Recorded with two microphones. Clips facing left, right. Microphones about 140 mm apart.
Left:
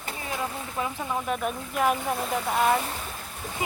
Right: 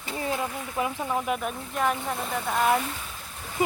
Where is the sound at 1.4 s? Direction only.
5° left (ahead or behind).